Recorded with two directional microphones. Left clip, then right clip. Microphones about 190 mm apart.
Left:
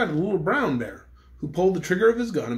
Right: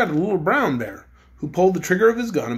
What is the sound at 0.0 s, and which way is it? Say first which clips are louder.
Speech: right 4 dB; 10° right (ahead or behind).